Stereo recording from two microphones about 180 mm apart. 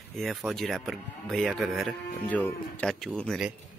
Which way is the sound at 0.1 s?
Centre (ahead or behind).